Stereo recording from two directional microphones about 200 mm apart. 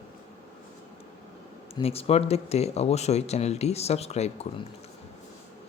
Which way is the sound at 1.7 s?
30° left (ahead or behind).